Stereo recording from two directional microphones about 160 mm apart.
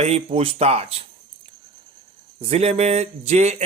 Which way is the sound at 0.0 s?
40° right (ahead or behind).